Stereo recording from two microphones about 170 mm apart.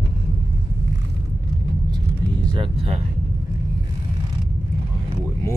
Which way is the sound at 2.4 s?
30° right (ahead or behind).